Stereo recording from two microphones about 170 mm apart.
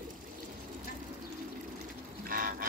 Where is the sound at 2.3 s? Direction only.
55° right (ahead or behind).